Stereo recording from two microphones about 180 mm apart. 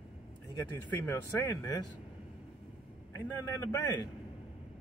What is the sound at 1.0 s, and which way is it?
Speech, 20° left (ahead or behind).